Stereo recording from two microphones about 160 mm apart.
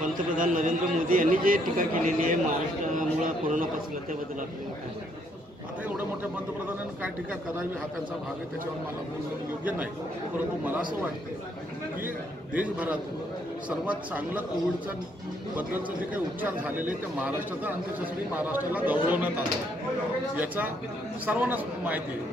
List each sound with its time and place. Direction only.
0.0 s a man's voice: 55° right (ahead or behind)
10.3 s speech: 10° right (ahead or behind)
12.5 s speech: 10° right (ahead or behind)
16.3 s speech: 10° right (ahead or behind)
18.3 s speech: 10° right (ahead or behind)